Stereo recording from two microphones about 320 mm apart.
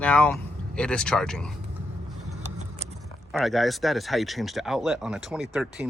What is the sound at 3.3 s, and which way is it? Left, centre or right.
Speech, centre.